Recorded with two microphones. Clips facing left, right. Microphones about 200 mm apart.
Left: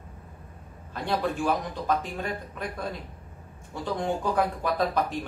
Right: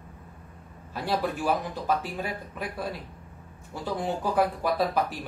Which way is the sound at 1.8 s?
5° right (ahead or behind).